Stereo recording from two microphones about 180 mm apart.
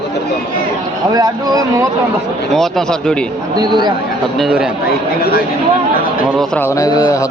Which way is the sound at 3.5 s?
25° right (ahead or behind).